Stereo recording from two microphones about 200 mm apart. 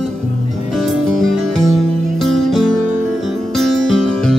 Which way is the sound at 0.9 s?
Centre (ahead or behind).